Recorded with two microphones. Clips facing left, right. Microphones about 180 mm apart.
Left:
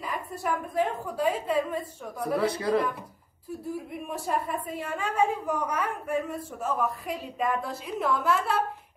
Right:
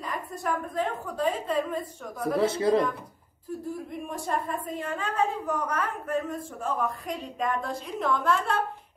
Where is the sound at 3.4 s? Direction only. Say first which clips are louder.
Even; 10° left (ahead or behind).